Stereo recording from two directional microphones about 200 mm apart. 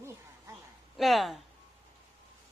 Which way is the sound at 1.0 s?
Centre (ahead or behind).